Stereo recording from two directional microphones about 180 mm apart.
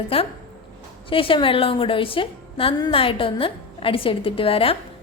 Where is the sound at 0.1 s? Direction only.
35° left (ahead or behind).